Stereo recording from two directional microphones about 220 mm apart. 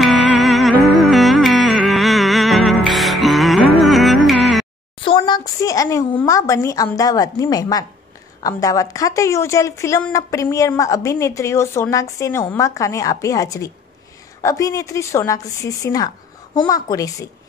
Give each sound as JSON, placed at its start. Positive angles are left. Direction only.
{"t": 0.0, "sound": "music", "side_deg": 0}
{"t": 5.0, "sound": "a woman's voice", "side_deg": 20}